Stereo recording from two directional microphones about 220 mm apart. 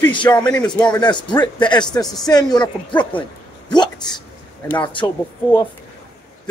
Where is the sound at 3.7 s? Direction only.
20° left (ahead or behind).